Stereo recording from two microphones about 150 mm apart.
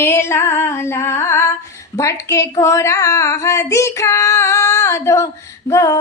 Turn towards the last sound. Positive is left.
turn(degrees=20)  # may be behind; listen again after turning